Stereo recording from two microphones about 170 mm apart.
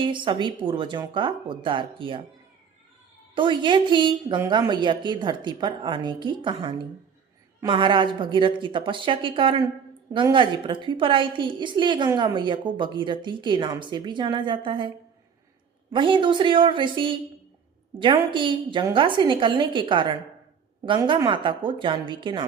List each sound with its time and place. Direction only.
0.0 s a woman's voice: 30° right (ahead or behind)
3.3 s a woman's voice: 30° right (ahead or behind)